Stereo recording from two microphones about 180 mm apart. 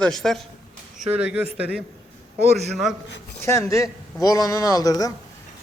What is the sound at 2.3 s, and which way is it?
Speech, 35° right (ahead or behind).